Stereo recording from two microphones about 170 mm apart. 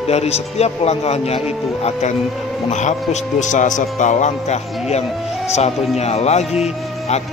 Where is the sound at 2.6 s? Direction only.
45° left (ahead or behind).